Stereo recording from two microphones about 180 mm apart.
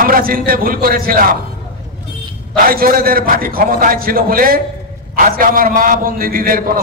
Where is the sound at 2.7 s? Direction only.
55° right (ahead or behind).